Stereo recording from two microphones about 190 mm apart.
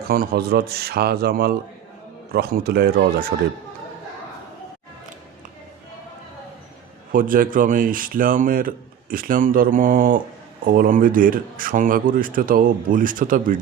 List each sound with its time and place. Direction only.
0.1 s speech: 55° right (ahead or behind)
7.1 s speech: 45° right (ahead or behind)